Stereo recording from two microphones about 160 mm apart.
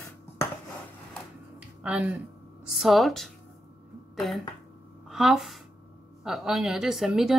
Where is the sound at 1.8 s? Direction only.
10° right (ahead or behind).